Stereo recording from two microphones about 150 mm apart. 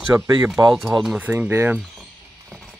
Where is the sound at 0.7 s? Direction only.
Centre (ahead or behind).